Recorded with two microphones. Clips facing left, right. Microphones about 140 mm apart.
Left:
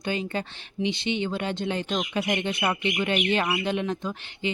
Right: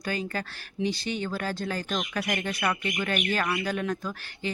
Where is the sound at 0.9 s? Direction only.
20° left (ahead or behind).